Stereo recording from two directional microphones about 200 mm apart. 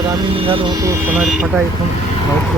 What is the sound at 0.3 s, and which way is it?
Speech, 25° right (ahead or behind).